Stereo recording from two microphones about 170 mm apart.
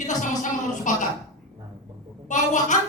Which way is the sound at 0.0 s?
45° left (ahead or behind).